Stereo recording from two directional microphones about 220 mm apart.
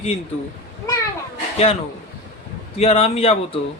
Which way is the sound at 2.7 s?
25° left (ahead or behind).